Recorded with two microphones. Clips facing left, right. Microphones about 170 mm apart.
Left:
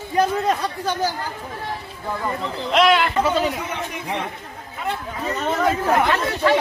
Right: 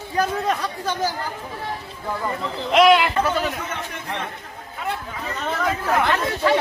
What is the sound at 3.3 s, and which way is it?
Speech, 15° left (ahead or behind).